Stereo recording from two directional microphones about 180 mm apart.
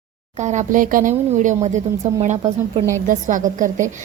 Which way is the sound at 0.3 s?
40° right (ahead or behind).